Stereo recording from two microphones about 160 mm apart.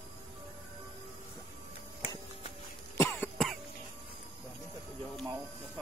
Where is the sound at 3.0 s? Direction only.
15° left (ahead or behind).